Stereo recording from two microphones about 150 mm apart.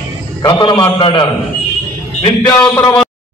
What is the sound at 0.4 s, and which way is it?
Speech, 30° left (ahead or behind).